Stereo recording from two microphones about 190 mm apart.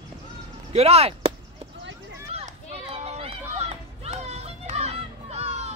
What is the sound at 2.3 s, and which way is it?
Run, 35° right (ahead or behind).